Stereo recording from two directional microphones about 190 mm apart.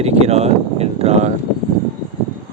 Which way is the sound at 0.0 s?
35° right (ahead or behind).